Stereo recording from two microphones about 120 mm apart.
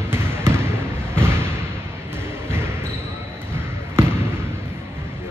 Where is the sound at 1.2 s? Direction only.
20° right (ahead or behind).